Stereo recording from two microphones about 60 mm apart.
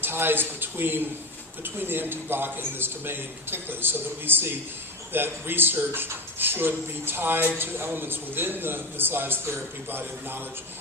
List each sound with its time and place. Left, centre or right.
0.0 s a man's voice: right